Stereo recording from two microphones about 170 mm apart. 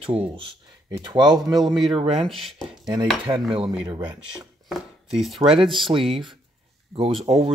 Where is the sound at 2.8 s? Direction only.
25° right (ahead or behind).